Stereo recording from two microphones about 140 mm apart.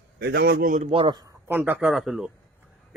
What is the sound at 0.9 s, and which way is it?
Speech, 40° right (ahead or behind).